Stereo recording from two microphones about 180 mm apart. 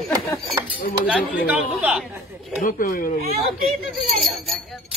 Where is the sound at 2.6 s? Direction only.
50° left (ahead or behind).